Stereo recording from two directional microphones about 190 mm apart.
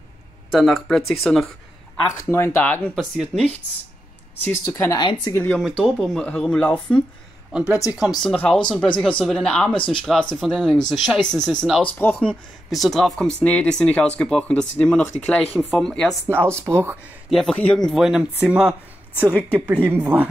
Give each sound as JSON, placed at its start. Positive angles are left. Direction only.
{"t": 0.5, "sound": "speech", "side_deg": 0}
{"t": 2.2, "sound": "speech", "side_deg": 15}
{"t": 3.2, "sound": "speech", "side_deg": -5}
{"t": 4.5, "sound": "speech", "side_deg": 15}
{"t": 5.3, "sound": "speech", "side_deg": 10}
{"t": 5.6, "sound": "speech", "side_deg": 0}
{"t": 7.5, "sound": "speech", "side_deg": -5}
{"t": 16.3, "sound": "speech", "side_deg": -10}
{"t": 17.3, "sound": "speech", "side_deg": 0}